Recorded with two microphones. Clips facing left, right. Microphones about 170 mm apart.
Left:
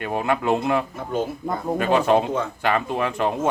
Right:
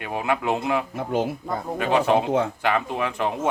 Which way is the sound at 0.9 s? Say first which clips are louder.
Right 1 dB; 75° right (ahead or behind).